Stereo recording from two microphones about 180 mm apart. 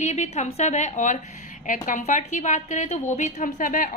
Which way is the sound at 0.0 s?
40° left (ahead or behind).